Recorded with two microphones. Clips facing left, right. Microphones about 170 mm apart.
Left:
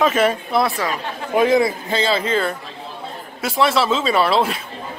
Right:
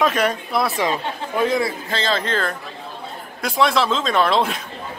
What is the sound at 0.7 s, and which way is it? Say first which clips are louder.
Speech: right 2 dB; 20° right (ahead or behind).